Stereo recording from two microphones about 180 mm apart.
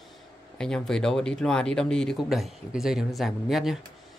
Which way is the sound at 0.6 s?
5° left (ahead or behind).